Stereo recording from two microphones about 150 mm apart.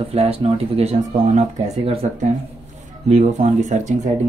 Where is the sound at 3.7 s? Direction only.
50° right (ahead or behind).